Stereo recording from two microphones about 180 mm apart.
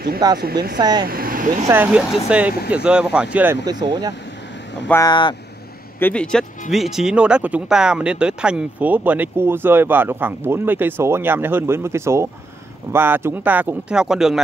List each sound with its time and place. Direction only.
0.4 s speech: 60° right (ahead or behind)
0.7 s speech: 25° right (ahead or behind)
1.0 s speech: 55° right (ahead or behind)
1.7 s speech: 10° right (ahead or behind)
3.6 s speech: 25° right (ahead or behind)
5.0 s speech: 25° left (ahead or behind)
5.9 s speech: 10° left (ahead or behind)